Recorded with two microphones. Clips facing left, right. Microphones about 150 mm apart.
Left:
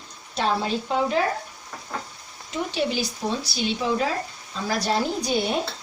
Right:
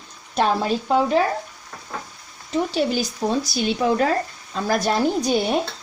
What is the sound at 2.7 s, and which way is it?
A woman's voice, 45° right (ahead or behind).